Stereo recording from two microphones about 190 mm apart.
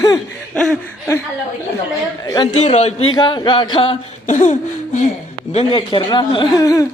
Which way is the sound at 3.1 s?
20° left (ahead or behind).